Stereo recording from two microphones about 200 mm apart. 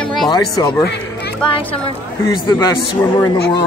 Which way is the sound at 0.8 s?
55° left (ahead or behind).